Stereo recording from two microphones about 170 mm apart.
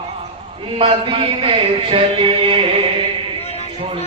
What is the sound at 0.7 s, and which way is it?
Music, 35° right (ahead or behind).